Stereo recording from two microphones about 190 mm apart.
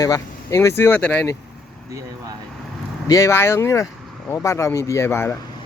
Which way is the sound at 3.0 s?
15° left (ahead or behind).